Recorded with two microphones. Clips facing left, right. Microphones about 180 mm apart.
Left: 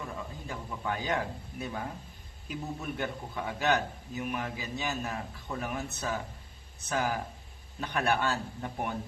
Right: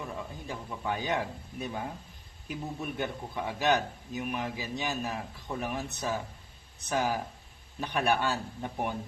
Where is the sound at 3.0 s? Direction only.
15° right (ahead or behind).